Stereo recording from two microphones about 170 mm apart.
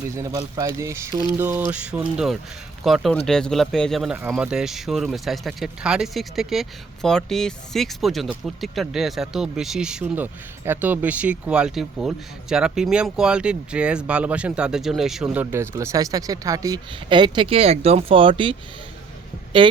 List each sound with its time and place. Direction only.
0.3 s a man's voice: 25° right (ahead or behind)